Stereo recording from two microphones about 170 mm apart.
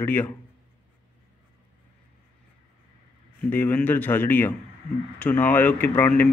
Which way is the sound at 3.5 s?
10° left (ahead or behind).